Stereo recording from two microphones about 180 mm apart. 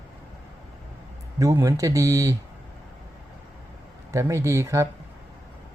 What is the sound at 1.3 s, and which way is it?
Speech, 20° right (ahead or behind).